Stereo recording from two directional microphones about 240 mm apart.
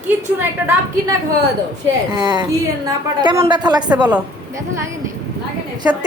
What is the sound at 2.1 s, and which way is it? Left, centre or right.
A woman's voice, centre.